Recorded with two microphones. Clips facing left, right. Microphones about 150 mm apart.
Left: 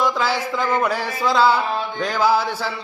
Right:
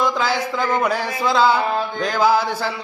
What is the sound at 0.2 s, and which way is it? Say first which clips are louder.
Speech: right 1 dB; 5° left (ahead or behind).